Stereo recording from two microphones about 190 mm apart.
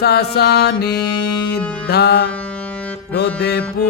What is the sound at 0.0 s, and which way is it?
Music, 60° left (ahead or behind).